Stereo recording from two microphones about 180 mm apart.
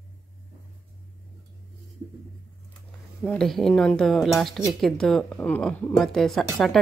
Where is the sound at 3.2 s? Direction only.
Centre (ahead or behind).